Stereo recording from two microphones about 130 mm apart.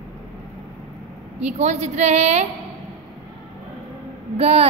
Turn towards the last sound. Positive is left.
turn(degrees=-50)  # may be behind; listen again after turning